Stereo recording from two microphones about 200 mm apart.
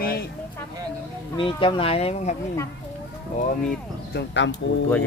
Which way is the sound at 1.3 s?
25° left (ahead or behind).